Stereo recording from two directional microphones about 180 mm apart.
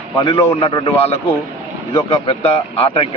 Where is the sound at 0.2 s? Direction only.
25° left (ahead or behind).